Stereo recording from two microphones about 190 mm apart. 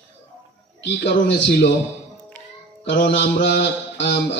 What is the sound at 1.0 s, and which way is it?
Speech, 60° left (ahead or behind).